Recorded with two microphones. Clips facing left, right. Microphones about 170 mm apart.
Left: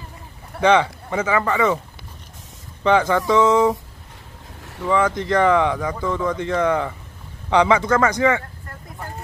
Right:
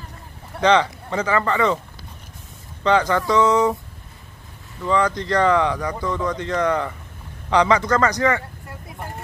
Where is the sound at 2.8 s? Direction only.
15° left (ahead or behind).